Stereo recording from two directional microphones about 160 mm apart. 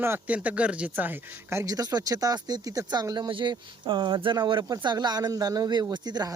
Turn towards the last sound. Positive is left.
turn(degrees=-25)  # may be behind; listen again after turning